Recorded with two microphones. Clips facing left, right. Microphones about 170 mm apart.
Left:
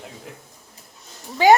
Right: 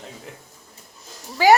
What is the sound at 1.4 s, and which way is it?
Speech, 20° left (ahead or behind).